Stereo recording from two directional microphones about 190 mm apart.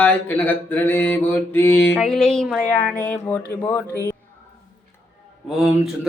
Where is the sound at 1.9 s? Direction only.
Centre (ahead or behind).